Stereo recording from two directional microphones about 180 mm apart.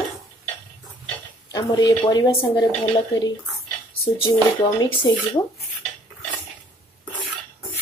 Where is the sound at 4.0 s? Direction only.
30° left (ahead or behind).